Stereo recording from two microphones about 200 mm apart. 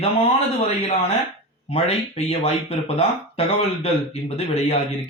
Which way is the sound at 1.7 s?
30° left (ahead or behind).